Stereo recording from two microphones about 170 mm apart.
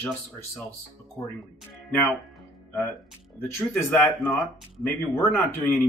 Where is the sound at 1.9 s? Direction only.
10° left (ahead or behind).